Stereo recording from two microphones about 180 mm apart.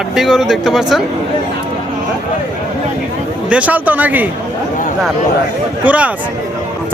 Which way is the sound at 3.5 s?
5° right (ahead or behind).